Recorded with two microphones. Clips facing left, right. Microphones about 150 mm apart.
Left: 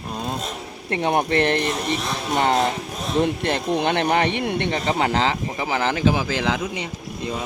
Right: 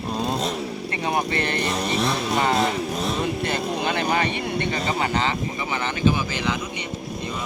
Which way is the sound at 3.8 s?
70° left (ahead or behind).